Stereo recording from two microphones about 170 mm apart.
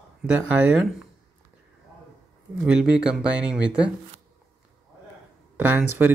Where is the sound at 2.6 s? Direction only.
5° right (ahead or behind).